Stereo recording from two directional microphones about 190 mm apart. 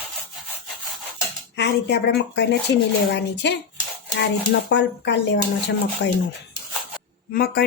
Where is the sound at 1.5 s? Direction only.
65° left (ahead or behind).